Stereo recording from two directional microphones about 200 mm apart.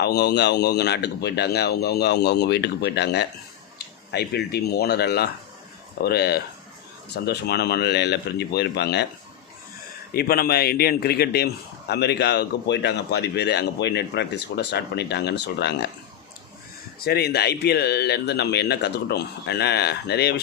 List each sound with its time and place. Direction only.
0.0 s a man's voice: 55° left (ahead or behind)
10.1 s a man's voice: 50° left (ahead or behind)
17.0 s a man's voice: 55° left (ahead or behind)